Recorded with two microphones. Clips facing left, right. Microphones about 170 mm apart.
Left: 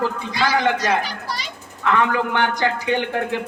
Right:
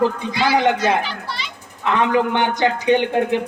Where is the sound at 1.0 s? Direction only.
40° left (ahead or behind).